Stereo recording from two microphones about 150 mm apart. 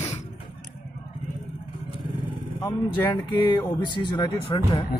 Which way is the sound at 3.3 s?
30° left (ahead or behind).